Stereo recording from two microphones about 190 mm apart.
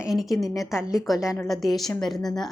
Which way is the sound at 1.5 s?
Centre (ahead or behind).